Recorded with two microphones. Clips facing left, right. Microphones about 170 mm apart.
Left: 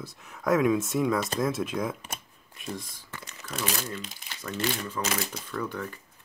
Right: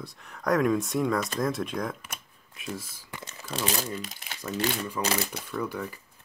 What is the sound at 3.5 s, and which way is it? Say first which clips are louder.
Speech: right 2 dB; 30° right (ahead or behind).